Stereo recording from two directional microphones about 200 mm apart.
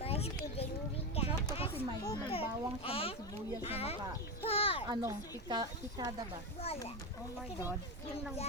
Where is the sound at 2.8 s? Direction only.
30° left (ahead or behind).